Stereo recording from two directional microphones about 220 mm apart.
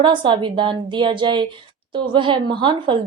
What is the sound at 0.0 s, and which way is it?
Speech, 20° right (ahead or behind).